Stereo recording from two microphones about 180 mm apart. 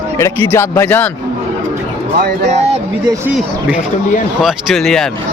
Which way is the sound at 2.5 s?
40° right (ahead or behind).